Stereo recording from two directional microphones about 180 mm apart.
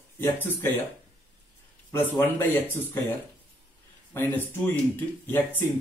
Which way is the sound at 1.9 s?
10° left (ahead or behind).